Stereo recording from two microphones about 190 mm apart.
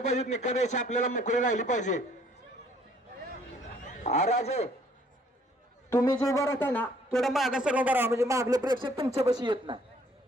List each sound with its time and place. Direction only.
0.6 s a man's voice: 40° left (ahead or behind)
4.0 s a man's voice: 35° left (ahead or behind)
5.9 s a man's voice: 15° left (ahead or behind); by 9.8 s 25° right (ahead or behind)